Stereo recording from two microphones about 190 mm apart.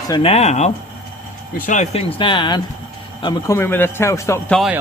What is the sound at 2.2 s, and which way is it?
A man's voice, 25° left (ahead or behind).